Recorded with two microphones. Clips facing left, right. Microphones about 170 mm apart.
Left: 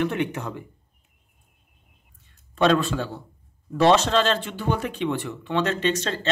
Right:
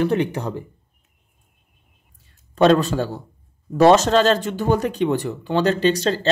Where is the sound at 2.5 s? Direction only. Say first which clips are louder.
Right 5 dB; 40° right (ahead or behind).